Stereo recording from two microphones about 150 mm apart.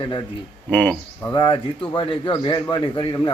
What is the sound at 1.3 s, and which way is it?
A man's voice, 30° left (ahead or behind).